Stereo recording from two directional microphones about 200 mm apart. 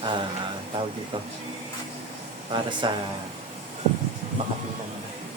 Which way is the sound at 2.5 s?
25° right (ahead or behind).